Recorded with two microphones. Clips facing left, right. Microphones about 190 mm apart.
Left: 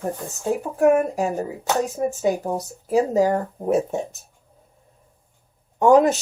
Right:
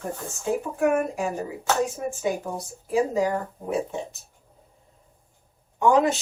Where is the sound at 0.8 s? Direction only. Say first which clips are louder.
Left 7 dB; 40° left (ahead or behind).